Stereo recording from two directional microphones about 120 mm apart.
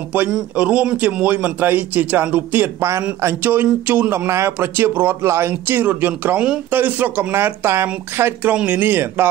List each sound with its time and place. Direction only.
0.1 s a man's voice: 10° right (ahead or behind)